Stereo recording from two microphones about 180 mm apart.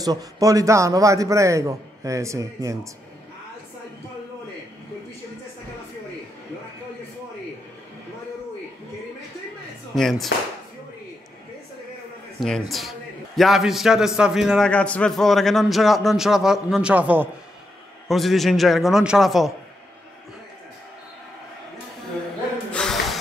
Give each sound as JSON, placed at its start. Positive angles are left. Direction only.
{"t": 0.0, "sound": "a man's voice", "side_deg": -20}
{"t": 9.9, "sound": "a man's voice", "side_deg": 0}
{"t": 12.4, "sound": "a man's voice", "side_deg": 0}
{"t": 22.7, "sound": "snort", "side_deg": 5}